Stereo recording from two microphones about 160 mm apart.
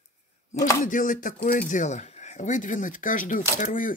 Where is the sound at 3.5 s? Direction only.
55° left (ahead or behind).